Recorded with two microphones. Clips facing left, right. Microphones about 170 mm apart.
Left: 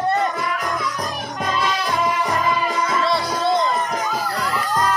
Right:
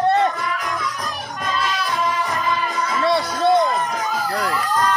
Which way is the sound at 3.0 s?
60° right (ahead or behind).